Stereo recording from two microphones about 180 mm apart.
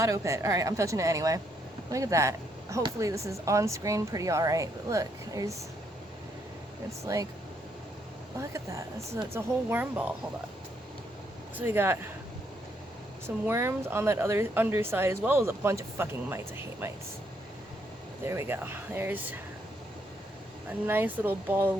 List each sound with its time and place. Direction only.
0.0 s speech: 15° right (ahead or behind)
7.0 s speech: 20° right (ahead or behind)
8.4 s speech: 15° right (ahead or behind)
11.5 s speech: 10° right (ahead or behind)
13.2 s speech: 15° right (ahead or behind)
18.3 s speech: 15° right (ahead or behind)
20.8 s speech: 10° right (ahead or behind)